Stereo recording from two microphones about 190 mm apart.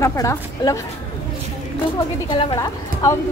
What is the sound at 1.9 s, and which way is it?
A woman's voice, 25° left (ahead or behind).